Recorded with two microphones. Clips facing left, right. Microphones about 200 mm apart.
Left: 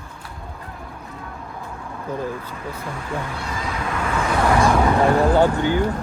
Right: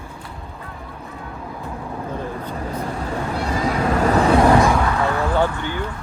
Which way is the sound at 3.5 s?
45° right (ahead or behind).